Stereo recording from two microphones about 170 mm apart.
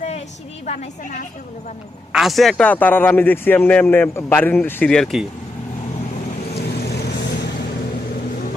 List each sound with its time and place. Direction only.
0.6 s a woman's voice: 45° left (ahead or behind)
2.1 s a man's voice: centre (ahead or behind)
6.6 s vehicle: 70° left (ahead or behind)